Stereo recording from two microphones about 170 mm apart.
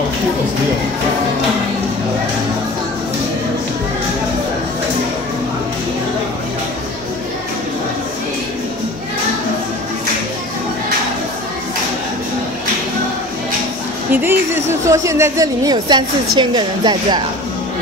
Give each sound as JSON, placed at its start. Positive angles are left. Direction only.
{"t": 14.1, "sound": "speech", "side_deg": -15}